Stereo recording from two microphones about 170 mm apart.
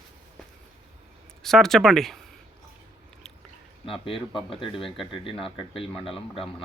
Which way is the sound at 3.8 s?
30° left (ahead or behind).